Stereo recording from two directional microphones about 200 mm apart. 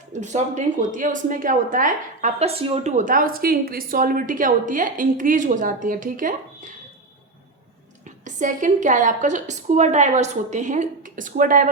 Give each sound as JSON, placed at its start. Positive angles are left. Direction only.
{"t": 0.1, "sound": "a woman's voice", "side_deg": -35}
{"t": 8.2, "sound": "a woman's voice", "side_deg": -40}